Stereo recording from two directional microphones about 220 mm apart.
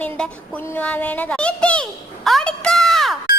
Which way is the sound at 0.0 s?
5° left (ahead or behind).